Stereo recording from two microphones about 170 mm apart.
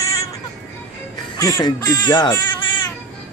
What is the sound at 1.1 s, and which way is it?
Speech, 20° left (ahead or behind).